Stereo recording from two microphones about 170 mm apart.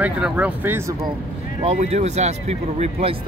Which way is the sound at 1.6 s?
40° right (ahead or behind).